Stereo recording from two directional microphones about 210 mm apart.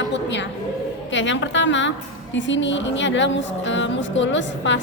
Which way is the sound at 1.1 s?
60° left (ahead or behind).